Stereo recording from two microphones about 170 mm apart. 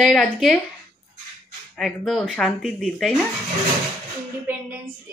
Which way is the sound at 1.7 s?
Centre (ahead or behind).